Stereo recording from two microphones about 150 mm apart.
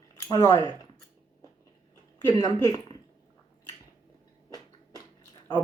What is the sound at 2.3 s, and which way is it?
Speech, 25° left (ahead or behind).